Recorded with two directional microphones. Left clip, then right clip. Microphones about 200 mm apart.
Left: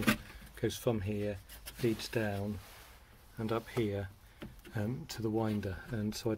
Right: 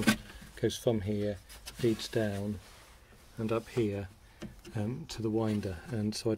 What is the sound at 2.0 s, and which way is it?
Speech, 20° right (ahead or behind).